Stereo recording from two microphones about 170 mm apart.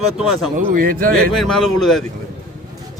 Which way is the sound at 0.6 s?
55° right (ahead or behind).